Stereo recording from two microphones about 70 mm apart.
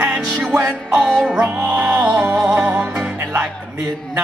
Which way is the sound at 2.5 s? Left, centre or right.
Right.